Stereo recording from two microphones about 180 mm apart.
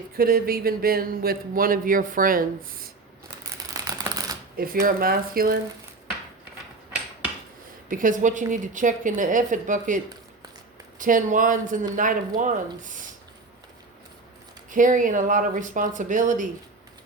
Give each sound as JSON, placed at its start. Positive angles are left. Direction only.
{"t": 0.2, "sound": "a man's voice", "side_deg": -55}
{"t": 3.8, "sound": "camera", "side_deg": -20}
{"t": 4.5, "sound": "a man's voice", "side_deg": -55}
{"t": 7.9, "sound": "a man's voice", "side_deg": -50}
{"t": 11.0, "sound": "a man's voice", "side_deg": -45}
{"t": 14.7, "sound": "a man's voice", "side_deg": -45}